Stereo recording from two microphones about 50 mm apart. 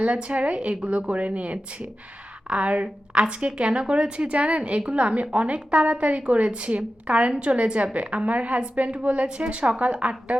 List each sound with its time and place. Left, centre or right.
0.0 s a woman's voice: right